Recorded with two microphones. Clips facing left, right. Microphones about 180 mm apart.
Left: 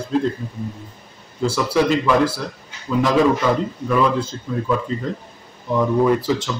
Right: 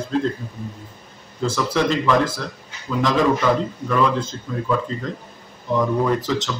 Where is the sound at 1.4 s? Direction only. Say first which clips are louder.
Left 2 dB; 10° left (ahead or behind).